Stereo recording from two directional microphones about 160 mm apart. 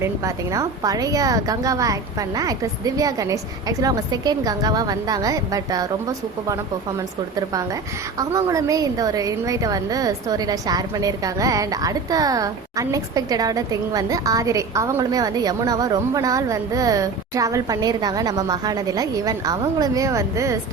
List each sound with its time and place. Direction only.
0.5 s a woman's voice: 20° right (ahead or behind)
8.2 s a woman's voice: 20° right (ahead or behind)